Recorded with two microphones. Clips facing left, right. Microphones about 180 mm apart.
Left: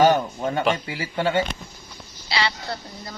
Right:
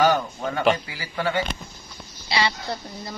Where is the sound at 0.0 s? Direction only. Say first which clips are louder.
Left 3 dB; 25° left (ahead or behind).